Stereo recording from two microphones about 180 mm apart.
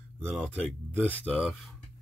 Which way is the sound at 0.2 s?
5° left (ahead or behind).